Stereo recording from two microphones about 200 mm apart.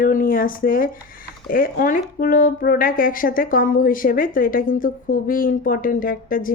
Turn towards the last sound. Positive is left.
turn(degrees=45)  # may be behind; listen again after turning